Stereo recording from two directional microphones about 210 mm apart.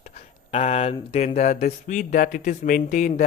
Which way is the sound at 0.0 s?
30° left (ahead or behind).